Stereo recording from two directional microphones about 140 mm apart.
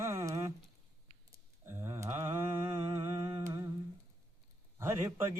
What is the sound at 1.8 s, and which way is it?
Humming, 20° right (ahead or behind).